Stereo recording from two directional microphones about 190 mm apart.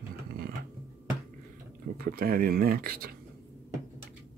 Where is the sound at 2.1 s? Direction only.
50° right (ahead or behind).